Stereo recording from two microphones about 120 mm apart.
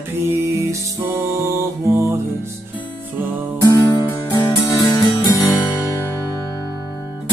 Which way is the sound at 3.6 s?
35° left (ahead or behind).